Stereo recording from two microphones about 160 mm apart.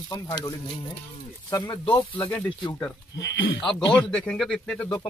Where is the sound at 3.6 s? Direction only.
5° left (ahead or behind).